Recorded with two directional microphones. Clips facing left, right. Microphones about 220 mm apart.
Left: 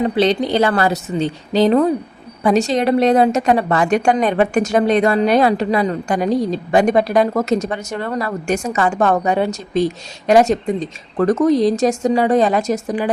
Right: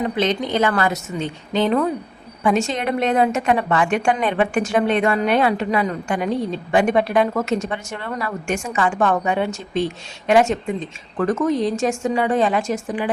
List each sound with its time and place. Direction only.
0.0 s a woman's voice: 35° left (ahead or behind)